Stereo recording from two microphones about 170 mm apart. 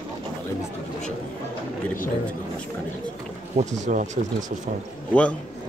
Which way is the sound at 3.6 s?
45° right (ahead or behind).